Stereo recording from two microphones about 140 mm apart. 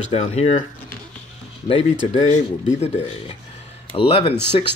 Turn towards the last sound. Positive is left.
turn(degrees=40)  # may be behind; listen again after turning